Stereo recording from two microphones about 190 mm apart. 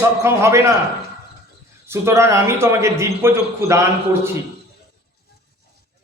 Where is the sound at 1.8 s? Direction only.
15° right (ahead or behind).